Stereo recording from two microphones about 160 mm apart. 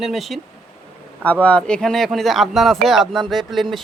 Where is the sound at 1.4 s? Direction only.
5° left (ahead or behind).